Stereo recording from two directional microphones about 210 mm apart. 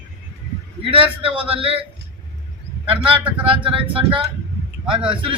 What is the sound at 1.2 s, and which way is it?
Speech, 25° right (ahead or behind).